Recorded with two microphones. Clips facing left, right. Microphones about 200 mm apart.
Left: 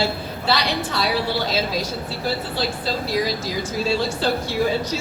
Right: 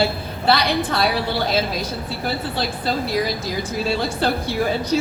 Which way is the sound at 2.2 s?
55° right (ahead or behind).